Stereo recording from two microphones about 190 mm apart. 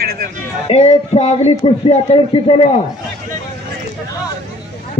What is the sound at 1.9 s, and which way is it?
Speech, 30° left (ahead or behind).